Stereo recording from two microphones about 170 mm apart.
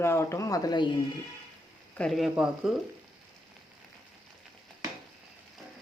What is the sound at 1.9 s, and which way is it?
Speech, 5° left (ahead or behind).